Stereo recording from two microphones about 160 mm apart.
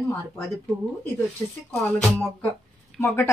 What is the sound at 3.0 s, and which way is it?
Speech, 15° left (ahead or behind).